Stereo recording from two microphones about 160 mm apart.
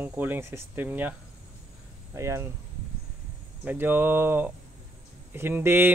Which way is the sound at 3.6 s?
10° right (ahead or behind).